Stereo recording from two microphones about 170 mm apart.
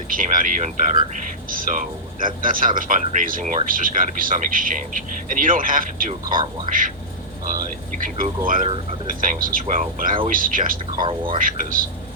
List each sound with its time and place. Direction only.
0.1 s speech: 55° right (ahead or behind)
11.0 s speech: 30° right (ahead or behind)
11.3 s speech: 55° right (ahead or behind)